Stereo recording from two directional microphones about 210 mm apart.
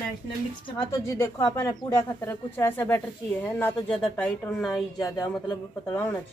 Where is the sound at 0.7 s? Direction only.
15° left (ahead or behind).